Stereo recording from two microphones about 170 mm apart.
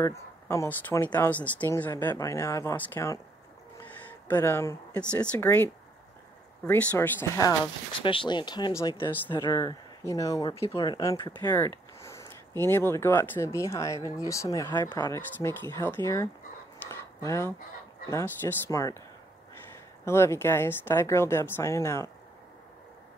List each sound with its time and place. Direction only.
0.0 s speech: 15° left (ahead or behind)
4.3 s speech: 15° left (ahead or behind)
16.9 s a sound: 15° left (ahead or behind)
18.1 s speech: 15° left (ahead or behind)
20.1 s speech: 15° left (ahead or behind)